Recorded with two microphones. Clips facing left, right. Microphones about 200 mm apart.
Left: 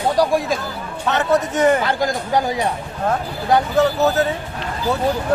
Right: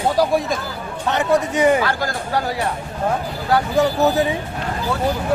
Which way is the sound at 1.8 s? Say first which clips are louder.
Left 3 dB; 15° left (ahead or behind).